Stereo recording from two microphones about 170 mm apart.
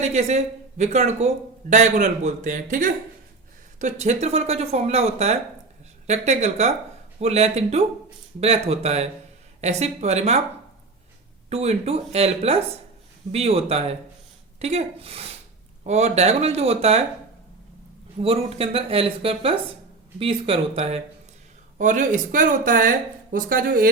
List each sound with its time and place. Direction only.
0.0 s speech: 40° right (ahead or behind)
11.4 s speech: 40° right (ahead or behind)
18.2 s speech: 35° right (ahead or behind); by 23.9 s 55° right (ahead or behind)